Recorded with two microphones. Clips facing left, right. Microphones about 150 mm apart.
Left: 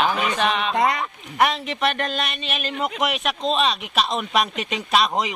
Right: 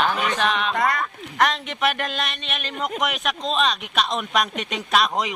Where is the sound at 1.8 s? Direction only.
Centre (ahead or behind).